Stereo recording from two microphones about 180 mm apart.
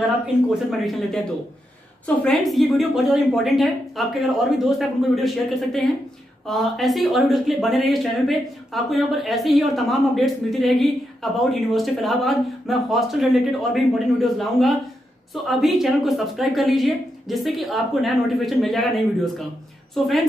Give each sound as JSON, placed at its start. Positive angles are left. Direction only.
{"t": 0.7, "sound": "speech", "side_deg": 0}